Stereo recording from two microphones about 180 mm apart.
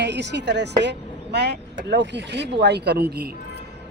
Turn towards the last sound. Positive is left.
turn(degrees=-70)  # may be behind; listen again after turning